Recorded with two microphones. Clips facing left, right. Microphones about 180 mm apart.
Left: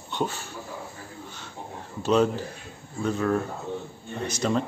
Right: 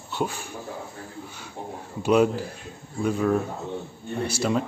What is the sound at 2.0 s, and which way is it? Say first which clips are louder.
Speech: right 2 dB; 10° right (ahead or behind).